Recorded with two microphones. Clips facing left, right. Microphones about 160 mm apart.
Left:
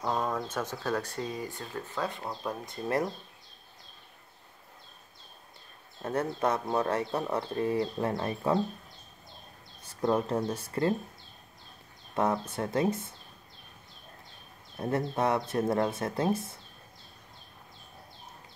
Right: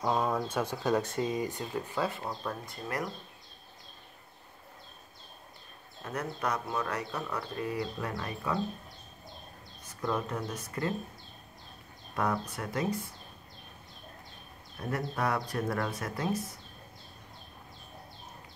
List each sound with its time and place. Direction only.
0.0 s speech: 10° right (ahead or behind)
2.4 s speech: 20° left (ahead or behind)
6.0 s speech: 25° left (ahead or behind)
9.8 s speech: 30° left (ahead or behind)
12.2 s speech: 25° left (ahead or behind)
14.8 s speech: 25° left (ahead or behind)